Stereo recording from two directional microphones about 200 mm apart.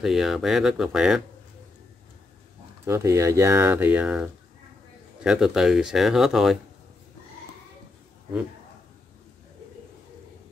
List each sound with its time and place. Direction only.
0.0 s speech: centre (ahead or behind)
2.8 s speech: 15° right (ahead or behind)